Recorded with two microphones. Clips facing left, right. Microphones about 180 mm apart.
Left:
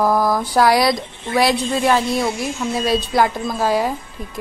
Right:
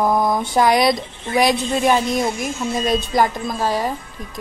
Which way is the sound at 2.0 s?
20° right (ahead or behind).